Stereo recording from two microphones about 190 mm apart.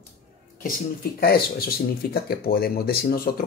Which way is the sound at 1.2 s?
50° left (ahead or behind).